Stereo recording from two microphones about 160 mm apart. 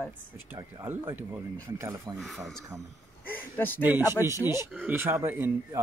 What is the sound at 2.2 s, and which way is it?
Speech, centre (ahead or behind).